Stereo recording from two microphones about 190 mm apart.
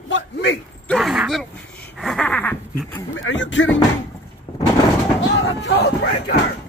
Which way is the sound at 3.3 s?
75° left (ahead or behind).